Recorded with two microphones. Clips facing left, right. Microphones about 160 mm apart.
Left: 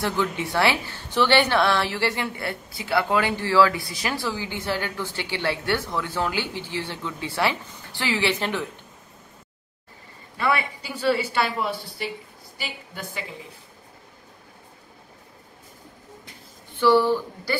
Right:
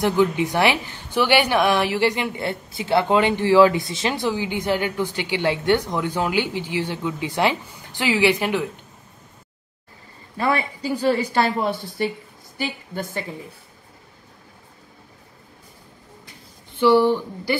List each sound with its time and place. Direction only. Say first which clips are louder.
0.0 s a woman's voice: right 7 dB; 15° right (ahead or behind)
10.3 s speech: right 2 dB; 40° right (ahead or behind)
16.8 s a woman's voice: right 3 dB; 15° right (ahead or behind)